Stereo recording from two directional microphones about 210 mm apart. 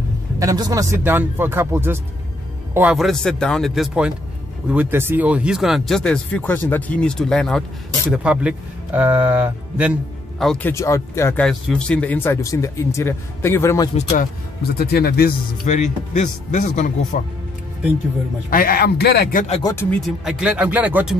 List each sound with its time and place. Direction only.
0.4 s speech: 15° right (ahead or behind)
10.4 s speech: 5° left (ahead or behind)
10.7 s speech: 15° left (ahead or behind)
14.8 s a man's voice: 50° left (ahead or behind)
15.6 s speech: 35° left (ahead or behind)
18.5 s a man's voice: 45° left (ahead or behind)
19.6 s speech: 10° left (ahead or behind)
20.2 s speech: 5° right (ahead or behind)